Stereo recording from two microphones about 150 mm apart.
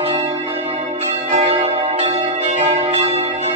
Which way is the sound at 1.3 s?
45° right (ahead or behind).